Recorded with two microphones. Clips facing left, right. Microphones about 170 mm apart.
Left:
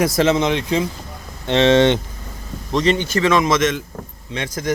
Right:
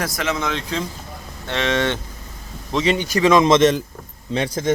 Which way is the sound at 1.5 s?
25° left (ahead or behind).